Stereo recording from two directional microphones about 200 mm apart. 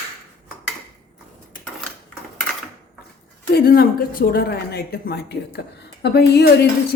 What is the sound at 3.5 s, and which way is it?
A woman's voice, 50° left (ahead or behind).